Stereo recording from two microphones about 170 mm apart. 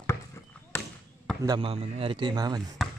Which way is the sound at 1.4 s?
20° right (ahead or behind).